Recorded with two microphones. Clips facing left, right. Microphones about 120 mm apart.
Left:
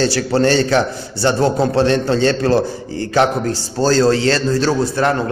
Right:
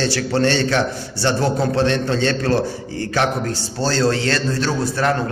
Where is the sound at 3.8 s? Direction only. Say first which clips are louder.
Left 5 dB; 40° left (ahead or behind).